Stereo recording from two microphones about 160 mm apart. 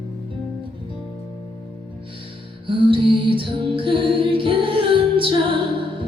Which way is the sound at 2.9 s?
35° right (ahead or behind).